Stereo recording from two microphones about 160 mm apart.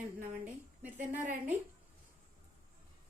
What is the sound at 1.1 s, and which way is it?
Speech, 10° right (ahead or behind).